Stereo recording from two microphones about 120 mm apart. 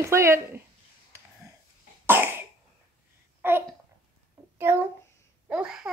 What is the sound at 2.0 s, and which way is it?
Cough, 20° right (ahead or behind).